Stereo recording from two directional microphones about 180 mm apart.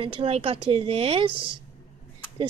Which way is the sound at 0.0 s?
30° right (ahead or behind).